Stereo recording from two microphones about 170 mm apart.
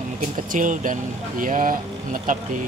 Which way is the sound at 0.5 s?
50° right (ahead or behind).